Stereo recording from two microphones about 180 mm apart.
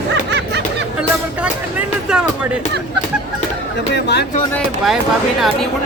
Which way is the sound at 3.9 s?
70° left (ahead or behind).